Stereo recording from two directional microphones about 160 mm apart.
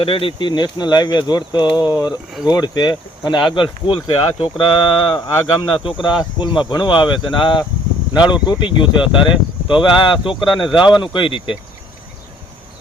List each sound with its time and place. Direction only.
0.0 s speech: 35° left (ahead or behind)